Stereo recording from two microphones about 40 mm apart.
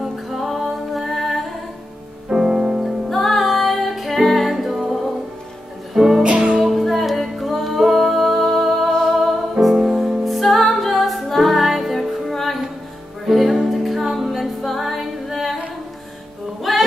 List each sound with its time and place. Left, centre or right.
0.0 s music: centre
2.2 s music: centre
3.1 s music: centre
6.2 s music: right
6.6 s music: centre
16.7 s singing: centre